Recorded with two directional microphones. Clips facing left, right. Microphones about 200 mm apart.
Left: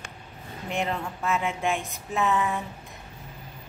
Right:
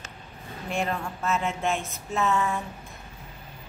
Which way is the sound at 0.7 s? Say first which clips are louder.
Even; 20° left (ahead or behind).